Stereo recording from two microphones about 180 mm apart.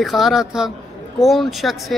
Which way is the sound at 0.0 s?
Centre (ahead or behind).